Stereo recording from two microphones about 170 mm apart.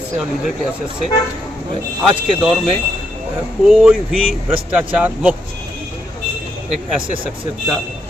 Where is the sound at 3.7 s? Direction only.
5° right (ahead or behind).